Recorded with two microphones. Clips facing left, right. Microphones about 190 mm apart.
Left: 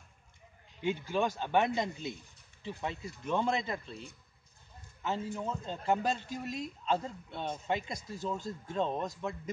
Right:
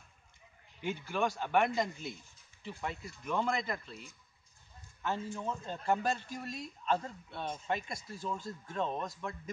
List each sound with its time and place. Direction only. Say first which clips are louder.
0.8 s a man's voice: left 3 dB; 20° left (ahead or behind)
2.7 s a man's voice: left 2 dB; 25° left (ahead or behind)
5.0 s a man's voice: left 1 dB; 15° left (ahead or behind)